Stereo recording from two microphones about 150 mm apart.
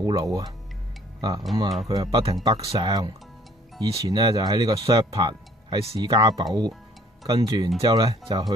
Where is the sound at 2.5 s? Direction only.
40° right (ahead or behind).